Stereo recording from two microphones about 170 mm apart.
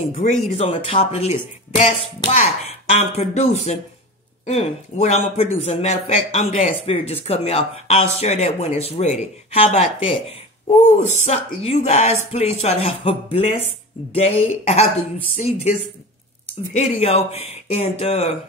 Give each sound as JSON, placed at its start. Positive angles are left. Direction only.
{"t": 0.1, "sound": "a man's voice", "side_deg": 45}
{"t": 16.7, "sound": "a man's voice", "side_deg": 40}